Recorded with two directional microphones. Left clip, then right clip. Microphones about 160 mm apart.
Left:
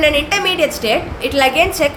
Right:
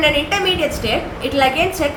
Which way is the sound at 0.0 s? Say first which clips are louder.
Left 2 dB; 45° left (ahead or behind).